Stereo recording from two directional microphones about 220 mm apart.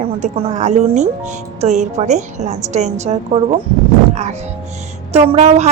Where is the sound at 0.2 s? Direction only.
30° right (ahead or behind).